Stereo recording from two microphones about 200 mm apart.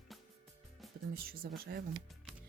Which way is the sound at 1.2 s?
50° right (ahead or behind).